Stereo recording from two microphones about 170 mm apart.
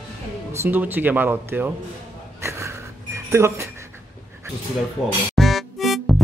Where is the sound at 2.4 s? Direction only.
15° right (ahead or behind).